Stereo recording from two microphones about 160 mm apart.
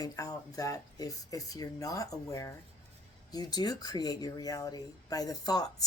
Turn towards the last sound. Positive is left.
turn(degrees=25)  # may be behind; listen again after turning